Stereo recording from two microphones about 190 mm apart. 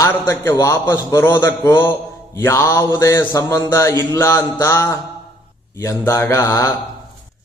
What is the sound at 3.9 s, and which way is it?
Mantra, 20° right (ahead or behind).